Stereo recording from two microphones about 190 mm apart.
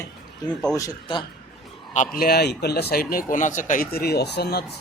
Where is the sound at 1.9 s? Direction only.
45° left (ahead or behind).